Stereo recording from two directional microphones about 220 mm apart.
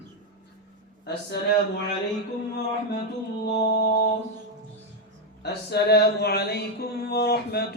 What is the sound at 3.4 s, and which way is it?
Mantra, 50° left (ahead or behind).